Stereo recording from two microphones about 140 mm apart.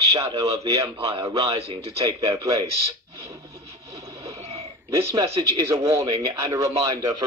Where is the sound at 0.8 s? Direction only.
45° right (ahead or behind).